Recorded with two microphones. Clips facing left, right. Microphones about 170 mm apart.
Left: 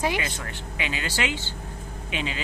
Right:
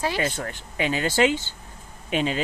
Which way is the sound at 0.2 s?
45° right (ahead or behind).